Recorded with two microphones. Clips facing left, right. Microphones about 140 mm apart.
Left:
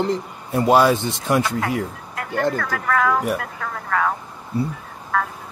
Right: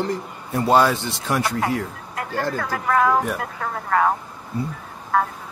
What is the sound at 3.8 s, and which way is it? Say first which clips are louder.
Speech: right 3 dB; 30° right (ahead or behind).